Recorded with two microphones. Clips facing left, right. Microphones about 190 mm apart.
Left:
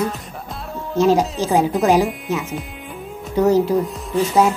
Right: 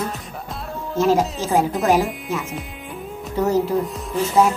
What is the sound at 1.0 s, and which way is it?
Speech, 20° left (ahead or behind).